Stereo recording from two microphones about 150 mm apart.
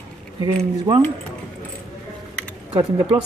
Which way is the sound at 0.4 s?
35° right (ahead or behind).